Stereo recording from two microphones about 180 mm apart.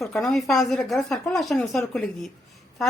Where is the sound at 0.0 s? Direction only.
Centre (ahead or behind).